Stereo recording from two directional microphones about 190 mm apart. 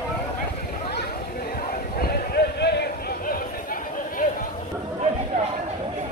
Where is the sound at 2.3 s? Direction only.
60° left (ahead or behind).